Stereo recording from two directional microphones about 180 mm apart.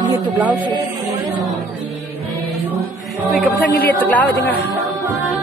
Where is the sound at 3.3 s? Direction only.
55° left (ahead or behind).